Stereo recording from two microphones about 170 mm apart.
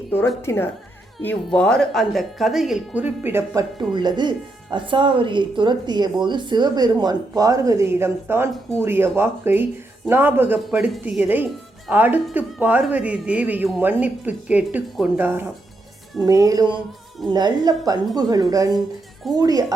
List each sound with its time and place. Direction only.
0.4 s speech: 15° left (ahead or behind); by 19.6 s 20° right (ahead or behind)